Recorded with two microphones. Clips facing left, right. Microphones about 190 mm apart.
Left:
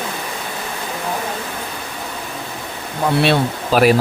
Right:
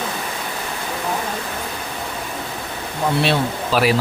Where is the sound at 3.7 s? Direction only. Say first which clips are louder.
Left 5 dB; 50° left (ahead or behind).